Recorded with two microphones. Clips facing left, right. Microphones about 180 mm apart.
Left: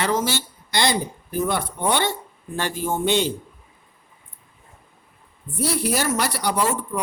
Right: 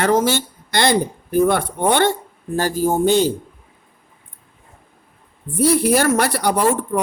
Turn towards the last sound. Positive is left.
turn(degrees=-55)  # may be behind; listen again after turning